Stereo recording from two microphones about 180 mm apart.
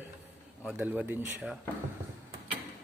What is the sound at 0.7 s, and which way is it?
Speech, 10° right (ahead or behind).